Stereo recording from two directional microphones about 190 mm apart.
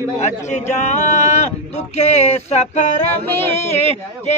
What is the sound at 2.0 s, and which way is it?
Speech, 35° left (ahead or behind).